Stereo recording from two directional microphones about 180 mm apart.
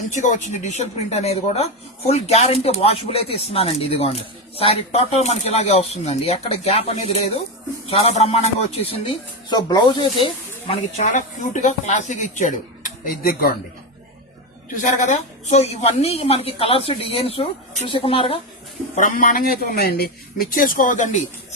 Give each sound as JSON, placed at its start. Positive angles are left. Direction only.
{"t": 0.1, "sound": "speech", "side_deg": 40}
{"t": 10.7, "sound": "speech", "side_deg": 45}
{"t": 14.8, "sound": "speech", "side_deg": 45}
{"t": 18.9, "sound": "speech", "side_deg": 45}